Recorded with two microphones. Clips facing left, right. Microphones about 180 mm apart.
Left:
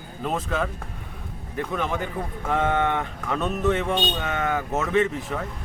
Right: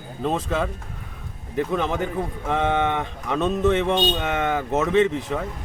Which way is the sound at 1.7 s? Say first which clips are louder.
Right 2 dB; 25° right (ahead or behind).